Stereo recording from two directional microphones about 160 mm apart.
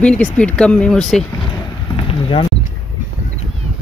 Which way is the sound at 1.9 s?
35° left (ahead or behind).